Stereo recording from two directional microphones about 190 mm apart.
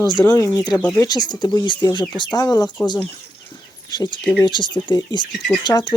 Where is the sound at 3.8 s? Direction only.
25° left (ahead or behind).